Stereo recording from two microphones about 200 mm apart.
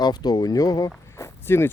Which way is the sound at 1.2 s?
15° left (ahead or behind).